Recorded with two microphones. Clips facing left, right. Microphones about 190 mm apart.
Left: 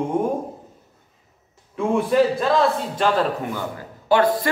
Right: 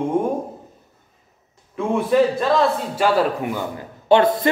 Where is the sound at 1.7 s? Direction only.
Centre (ahead or behind).